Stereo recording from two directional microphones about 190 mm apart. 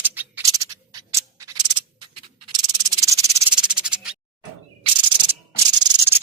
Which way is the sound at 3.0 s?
15° right (ahead or behind).